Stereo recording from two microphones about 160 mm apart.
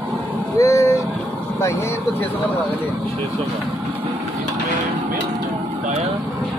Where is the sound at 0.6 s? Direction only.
20° left (ahead or behind).